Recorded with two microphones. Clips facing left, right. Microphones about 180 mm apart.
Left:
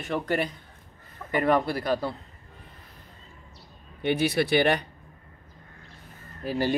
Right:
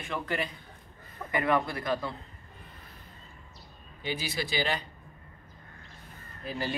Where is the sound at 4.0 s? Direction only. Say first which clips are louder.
Left 10 dB; 65° left (ahead or behind).